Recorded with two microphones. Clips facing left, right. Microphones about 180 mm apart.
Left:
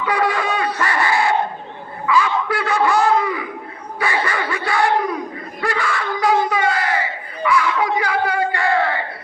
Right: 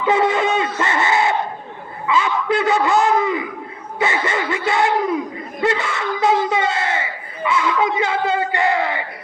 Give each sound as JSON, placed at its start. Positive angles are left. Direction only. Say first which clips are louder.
{"t": 0.0, "sound": "shofar", "louder": "right 3 dB", "side_deg": -20}
{"t": 2.0, "sound": "a sound", "louder": "even", "side_deg": -20}
{"t": 5.5, "sound": "crowd", "louder": "right 2 dB", "side_deg": -20}